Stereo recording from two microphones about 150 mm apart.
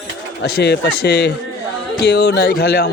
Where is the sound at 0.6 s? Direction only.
90° left.